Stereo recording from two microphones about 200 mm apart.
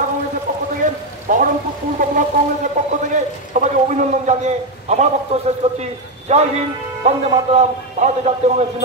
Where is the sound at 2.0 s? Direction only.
40° right (ahead or behind).